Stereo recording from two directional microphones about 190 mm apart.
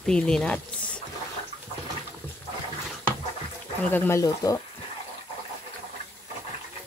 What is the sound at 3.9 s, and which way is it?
Speech, 10° left (ahead or behind).